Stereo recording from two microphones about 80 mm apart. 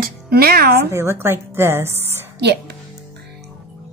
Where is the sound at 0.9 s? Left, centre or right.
Right.